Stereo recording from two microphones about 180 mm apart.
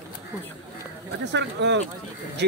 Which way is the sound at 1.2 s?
75° right (ahead or behind).